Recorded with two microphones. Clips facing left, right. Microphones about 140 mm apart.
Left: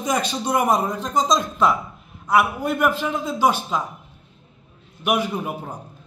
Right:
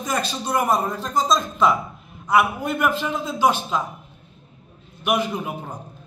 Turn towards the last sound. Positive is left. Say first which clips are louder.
# left 1 dB
turn(degrees=5)  # may be behind; listen again after turning